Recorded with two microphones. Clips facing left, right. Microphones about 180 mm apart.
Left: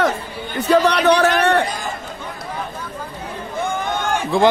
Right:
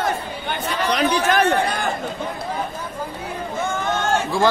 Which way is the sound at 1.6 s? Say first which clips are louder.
Right 2 dB; 65° right (ahead or behind).